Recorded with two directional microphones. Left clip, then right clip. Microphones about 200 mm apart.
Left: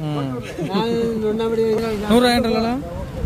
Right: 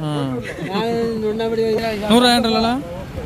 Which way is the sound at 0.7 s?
5° right (ahead or behind).